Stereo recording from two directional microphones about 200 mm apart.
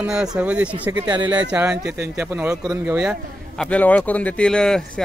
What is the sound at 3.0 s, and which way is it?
Speech, centre (ahead or behind).